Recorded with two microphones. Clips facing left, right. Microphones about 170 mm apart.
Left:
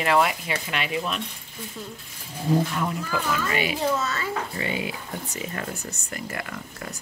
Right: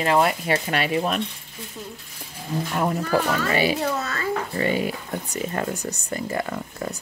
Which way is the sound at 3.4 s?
35° right (ahead or behind).